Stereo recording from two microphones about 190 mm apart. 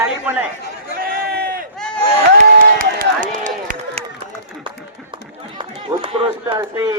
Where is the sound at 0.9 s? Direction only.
50° right (ahead or behind).